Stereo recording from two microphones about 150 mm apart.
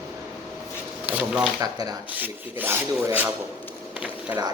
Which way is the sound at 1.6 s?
25° right (ahead or behind).